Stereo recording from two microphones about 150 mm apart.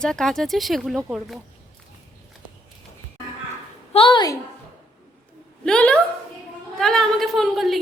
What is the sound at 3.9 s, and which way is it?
Speech, 35° left (ahead or behind).